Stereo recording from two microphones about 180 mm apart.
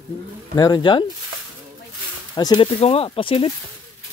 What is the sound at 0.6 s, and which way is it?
Speech, 25° left (ahead or behind).